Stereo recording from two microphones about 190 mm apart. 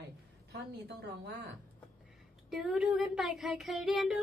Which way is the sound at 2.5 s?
Centre (ahead or behind).